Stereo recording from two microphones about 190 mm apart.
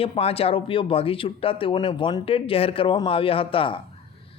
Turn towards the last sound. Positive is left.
turn(degrees=30)  # may be behind; listen again after turning